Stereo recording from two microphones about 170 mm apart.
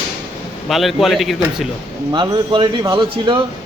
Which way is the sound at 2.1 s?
25° right (ahead or behind).